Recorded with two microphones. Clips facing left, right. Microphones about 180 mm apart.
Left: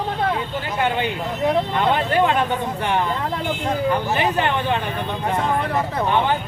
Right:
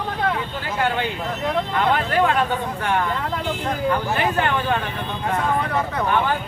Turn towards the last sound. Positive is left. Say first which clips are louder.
# left 1 dB
turn(degrees=15)  # may be behind; listen again after turning